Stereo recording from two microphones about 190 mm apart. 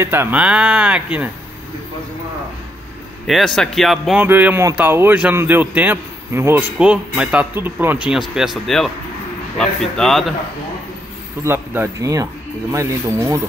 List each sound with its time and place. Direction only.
0.0 s speech: 10° right (ahead or behind)
3.3 s speech: centre (ahead or behind)
11.4 s speech: 10° right (ahead or behind)